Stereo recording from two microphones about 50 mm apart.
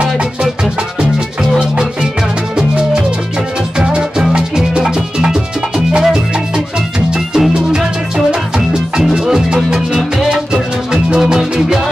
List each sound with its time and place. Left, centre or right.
2.5 s music: centre